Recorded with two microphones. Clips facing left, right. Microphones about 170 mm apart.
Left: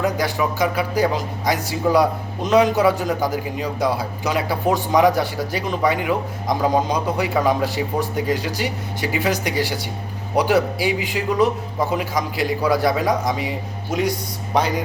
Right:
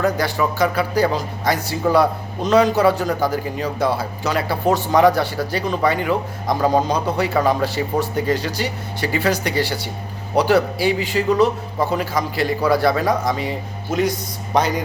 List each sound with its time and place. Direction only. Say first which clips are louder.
0.0 s a man's voice: right 1 dB; 15° left (ahead or behind)